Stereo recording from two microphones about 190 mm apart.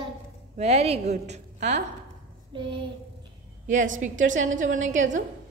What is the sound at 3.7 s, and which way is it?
A woman's voice, 40° right (ahead or behind).